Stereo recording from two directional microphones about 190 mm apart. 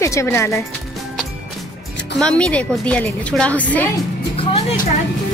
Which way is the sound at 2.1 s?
5° left (ahead or behind).